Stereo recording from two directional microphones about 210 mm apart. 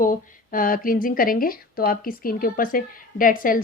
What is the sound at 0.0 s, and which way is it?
Speech, 40° left (ahead or behind).